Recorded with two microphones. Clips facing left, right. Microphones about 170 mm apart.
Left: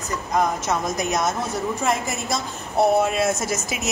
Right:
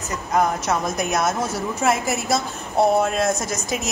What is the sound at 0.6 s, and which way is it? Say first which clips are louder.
A woman's voice: right 1 dB; centre (ahead or behind).